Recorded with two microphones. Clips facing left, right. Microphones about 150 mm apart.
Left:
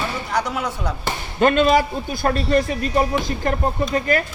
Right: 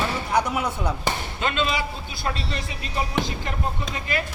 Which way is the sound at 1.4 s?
50° left (ahead or behind).